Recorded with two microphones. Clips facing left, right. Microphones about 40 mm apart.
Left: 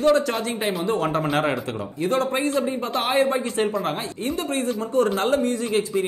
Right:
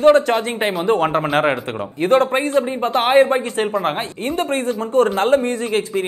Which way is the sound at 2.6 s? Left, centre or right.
Right.